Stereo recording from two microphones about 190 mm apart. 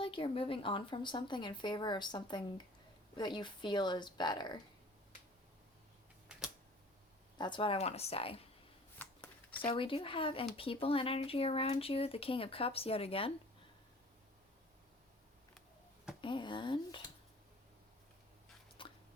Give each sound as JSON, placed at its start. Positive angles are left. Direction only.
{"t": 0.0, "sound": "speech", "side_deg": 30}
{"t": 7.3, "sound": "speech", "side_deg": 25}
{"t": 9.0, "sound": "shuffling cards", "side_deg": 10}
{"t": 9.6, "sound": "speech", "side_deg": 30}
{"t": 16.2, "sound": "speech", "side_deg": 25}
{"t": 18.8, "sound": "a sound", "side_deg": 25}